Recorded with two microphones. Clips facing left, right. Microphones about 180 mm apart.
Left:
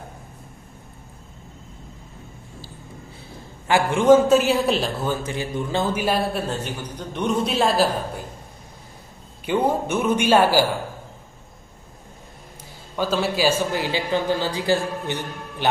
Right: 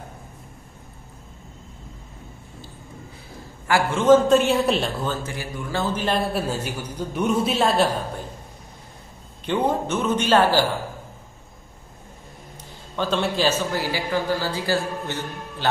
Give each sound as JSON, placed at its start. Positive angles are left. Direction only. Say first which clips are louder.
{"t": 3.6, "sound": "a man's voice", "louder": "left 2 dB", "side_deg": 20}
{"t": 5.0, "sound": "speech", "louder": "left 3 dB", "side_deg": 15}
{"t": 5.9, "sound": "a man's voice", "louder": "left 1 dB", "side_deg": 5}
{"t": 9.5, "sound": "speech", "louder": "left 1 dB", "side_deg": 10}
{"t": 12.9, "sound": "speech", "louder": "left 1 dB", "side_deg": 5}